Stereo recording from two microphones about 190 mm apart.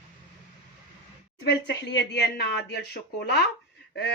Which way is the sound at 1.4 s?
65° left (ahead or behind).